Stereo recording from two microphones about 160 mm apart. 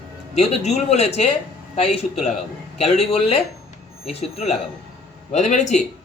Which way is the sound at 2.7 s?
40° left (ahead or behind).